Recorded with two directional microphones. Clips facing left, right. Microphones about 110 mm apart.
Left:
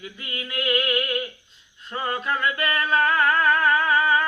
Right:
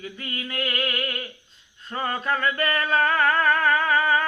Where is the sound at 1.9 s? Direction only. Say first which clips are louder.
Even; 35° right (ahead or behind).